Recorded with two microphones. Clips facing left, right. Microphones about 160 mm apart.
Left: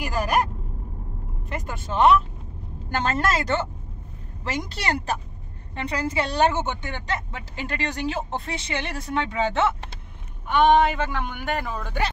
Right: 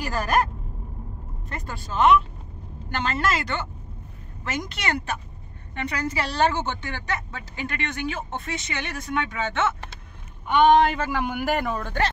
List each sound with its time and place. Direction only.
0.0 s vehicle: 10° left (ahead or behind)
1.5 s vehicle: 20° left (ahead or behind)
2.9 s a woman's voice: 45° left (ahead or behind)
10.5 s speech: centre (ahead or behind)